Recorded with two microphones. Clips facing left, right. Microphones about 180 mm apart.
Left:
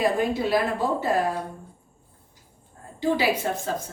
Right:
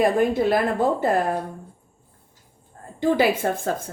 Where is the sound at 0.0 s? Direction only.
50° right (ahead or behind).